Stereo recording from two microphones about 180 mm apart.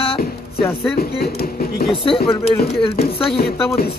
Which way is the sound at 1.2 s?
55° left (ahead or behind).